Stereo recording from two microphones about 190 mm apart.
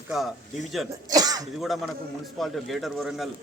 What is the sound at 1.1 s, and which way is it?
Throat clearing, 20° right (ahead or behind).